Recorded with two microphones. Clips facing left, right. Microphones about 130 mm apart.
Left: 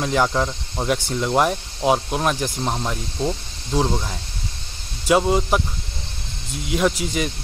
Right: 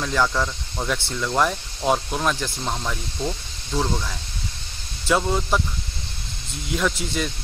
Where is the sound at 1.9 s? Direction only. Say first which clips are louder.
Left 2 dB; 10° left (ahead or behind); by 4.2 s 25° left (ahead or behind).